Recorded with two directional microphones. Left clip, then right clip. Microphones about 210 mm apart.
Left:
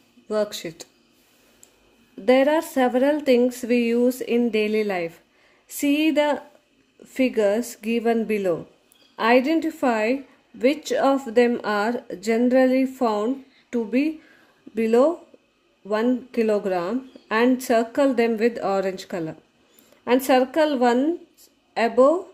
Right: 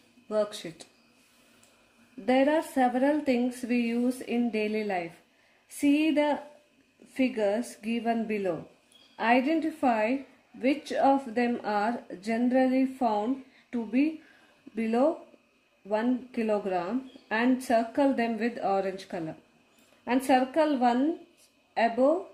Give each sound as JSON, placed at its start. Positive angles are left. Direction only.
{"t": 0.3, "sound": "speech", "side_deg": 45}
{"t": 2.2, "sound": "speech", "side_deg": 45}